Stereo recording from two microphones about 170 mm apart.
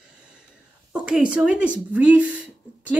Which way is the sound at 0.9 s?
5° right (ahead or behind).